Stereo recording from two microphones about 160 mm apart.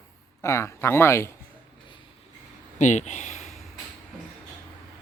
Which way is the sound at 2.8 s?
50° left (ahead or behind).